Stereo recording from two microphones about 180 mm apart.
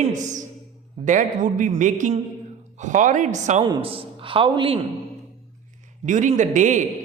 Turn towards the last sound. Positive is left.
turn(degrees=-45)  # may be behind; listen again after turning